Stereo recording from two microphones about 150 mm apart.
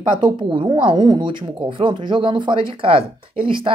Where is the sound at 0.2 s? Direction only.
30° right (ahead or behind).